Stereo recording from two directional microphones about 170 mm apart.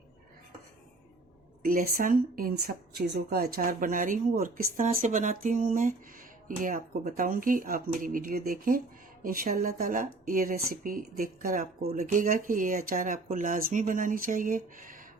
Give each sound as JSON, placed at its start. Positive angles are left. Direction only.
{"t": 1.6, "sound": "speech", "side_deg": -55}